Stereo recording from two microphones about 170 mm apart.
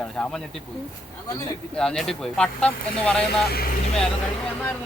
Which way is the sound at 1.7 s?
5° left (ahead or behind).